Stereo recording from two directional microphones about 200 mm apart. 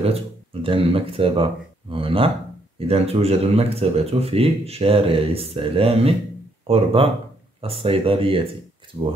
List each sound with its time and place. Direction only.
0.0 s speech: 30° right (ahead or behind)